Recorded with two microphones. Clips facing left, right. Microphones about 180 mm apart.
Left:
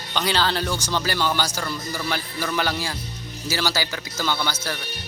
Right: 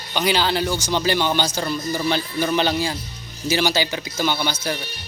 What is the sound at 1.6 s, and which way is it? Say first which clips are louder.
A man's voice: right 5 dB; 20° right (ahead or behind).